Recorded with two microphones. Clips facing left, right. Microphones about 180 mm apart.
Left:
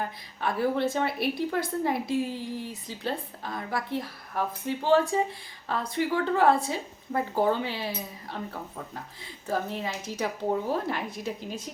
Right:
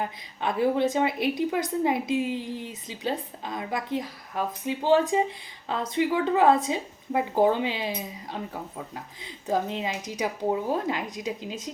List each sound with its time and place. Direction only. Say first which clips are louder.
0.0 s a woman's voice: right 1 dB; 15° right (ahead or behind)